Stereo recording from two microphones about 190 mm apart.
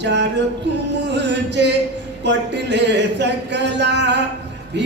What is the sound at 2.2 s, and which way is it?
Speech, 65° right (ahead or behind).